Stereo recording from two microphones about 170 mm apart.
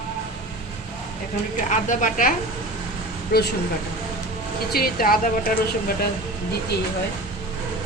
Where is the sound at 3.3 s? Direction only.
75° left (ahead or behind).